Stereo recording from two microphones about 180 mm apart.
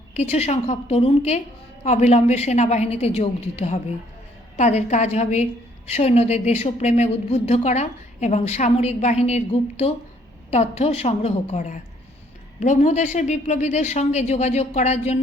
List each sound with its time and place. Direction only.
0.1 s a woman's voice: 35° left (ahead or behind)